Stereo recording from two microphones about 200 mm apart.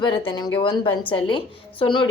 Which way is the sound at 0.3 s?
20° left (ahead or behind).